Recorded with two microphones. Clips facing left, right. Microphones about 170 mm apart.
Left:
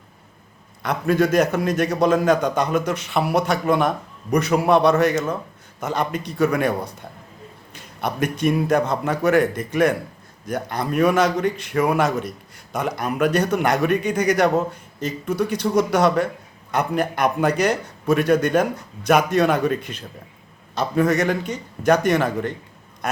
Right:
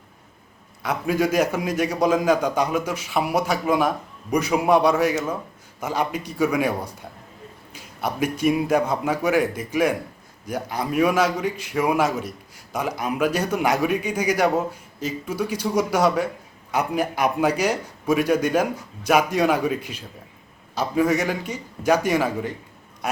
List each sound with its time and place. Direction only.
0.8 s a man's voice: 5° right (ahead or behind)